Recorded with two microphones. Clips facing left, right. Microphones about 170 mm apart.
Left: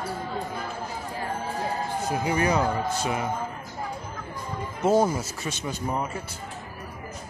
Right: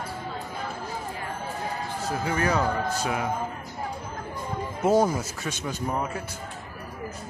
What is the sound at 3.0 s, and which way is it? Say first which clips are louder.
Speech: even; centre (ahead or behind).